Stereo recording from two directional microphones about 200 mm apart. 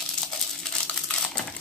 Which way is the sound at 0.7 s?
Centre (ahead or behind).